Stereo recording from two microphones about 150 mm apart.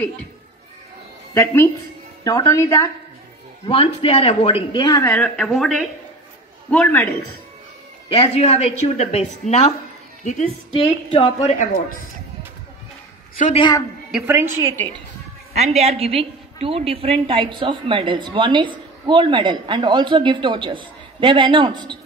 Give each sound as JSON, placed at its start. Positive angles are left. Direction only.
{"t": 1.3, "sound": "a woman's voice", "side_deg": 20}
{"t": 3.6, "sound": "speech", "side_deg": 35}
{"t": 5.0, "sound": "speech", "side_deg": 5}
{"t": 6.7, "sound": "a man's voice", "side_deg": 10}
{"t": 8.1, "sound": "a woman's voice", "side_deg": 40}
{"t": 13.6, "sound": "a woman's voice", "side_deg": 30}
{"t": 14.2, "sound": "a woman's voice", "side_deg": -15}
{"t": 15.5, "sound": "a woman's voice", "side_deg": -45}